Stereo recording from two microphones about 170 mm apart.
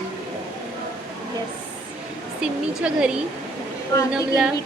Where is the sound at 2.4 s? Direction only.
5° right (ahead or behind).